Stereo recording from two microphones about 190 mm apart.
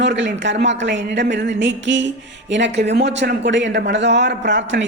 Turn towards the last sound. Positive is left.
turn(degrees=-70)  # may be behind; listen again after turning